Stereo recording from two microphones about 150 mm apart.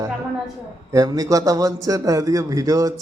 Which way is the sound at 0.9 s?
25° right (ahead or behind).